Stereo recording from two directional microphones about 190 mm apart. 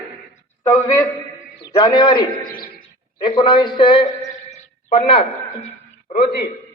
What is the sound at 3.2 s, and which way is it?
A man's voice, 25° left (ahead or behind).